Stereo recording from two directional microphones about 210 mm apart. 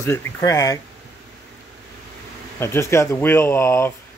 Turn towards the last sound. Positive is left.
turn(degrees=10)  # may be behind; listen again after turning